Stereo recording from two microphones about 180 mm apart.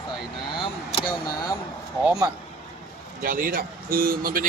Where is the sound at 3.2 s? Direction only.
50° right (ahead or behind).